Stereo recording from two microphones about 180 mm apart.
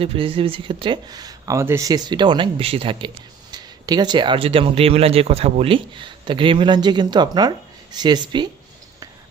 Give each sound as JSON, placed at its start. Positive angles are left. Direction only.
{"t": 0.0, "sound": "speech", "side_deg": -30}